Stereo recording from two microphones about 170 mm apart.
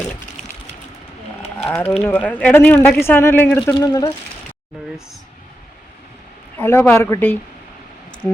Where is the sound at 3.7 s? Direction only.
20° left (ahead or behind).